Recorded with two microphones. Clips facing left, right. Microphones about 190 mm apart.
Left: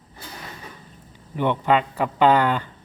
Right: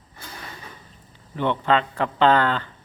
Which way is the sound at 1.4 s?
10° left (ahead or behind).